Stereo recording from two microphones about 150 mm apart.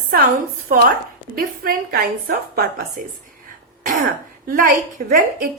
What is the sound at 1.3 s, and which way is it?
Speech, 75° right (ahead or behind).